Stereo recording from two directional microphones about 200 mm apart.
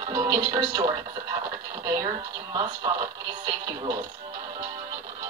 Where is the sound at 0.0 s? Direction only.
20° right (ahead or behind).